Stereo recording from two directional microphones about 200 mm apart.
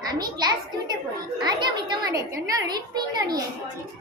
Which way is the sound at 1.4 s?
20° right (ahead or behind).